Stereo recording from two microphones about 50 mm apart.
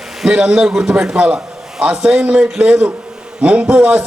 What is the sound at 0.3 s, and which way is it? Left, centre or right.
A man's voice, centre.